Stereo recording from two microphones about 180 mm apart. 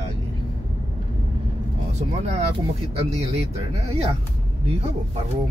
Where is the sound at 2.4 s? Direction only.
35° right (ahead or behind).